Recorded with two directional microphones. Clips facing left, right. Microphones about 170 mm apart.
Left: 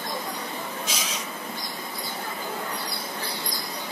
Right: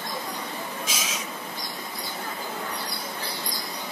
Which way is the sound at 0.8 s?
90° right.